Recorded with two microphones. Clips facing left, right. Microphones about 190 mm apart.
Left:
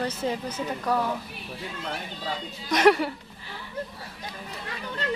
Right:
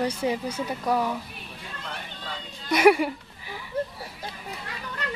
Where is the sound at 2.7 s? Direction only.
10° right (ahead or behind).